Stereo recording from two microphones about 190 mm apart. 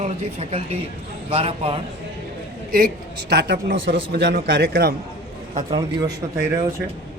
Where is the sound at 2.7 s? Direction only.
55° right (ahead or behind).